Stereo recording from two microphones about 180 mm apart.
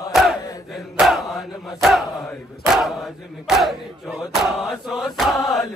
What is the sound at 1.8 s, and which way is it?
Chant, centre (ahead or behind).